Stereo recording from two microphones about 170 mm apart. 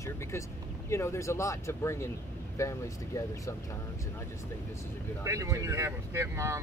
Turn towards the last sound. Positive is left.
turn(degrees=-15)  # may be behind; listen again after turning